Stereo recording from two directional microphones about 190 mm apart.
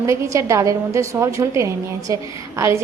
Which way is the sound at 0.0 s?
15° right (ahead or behind).